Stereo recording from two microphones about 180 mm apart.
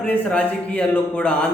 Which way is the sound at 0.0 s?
5° left (ahead or behind).